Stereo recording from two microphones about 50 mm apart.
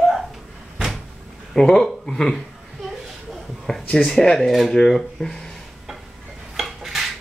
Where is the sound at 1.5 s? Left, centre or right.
Centre.